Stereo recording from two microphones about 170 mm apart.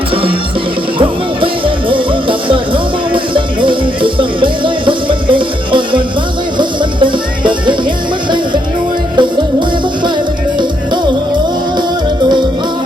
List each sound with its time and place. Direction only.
0.9 s speech: 30° right (ahead or behind)
3.1 s music: 30° right (ahead or behind)
9.1 s music: 25° right (ahead or behind)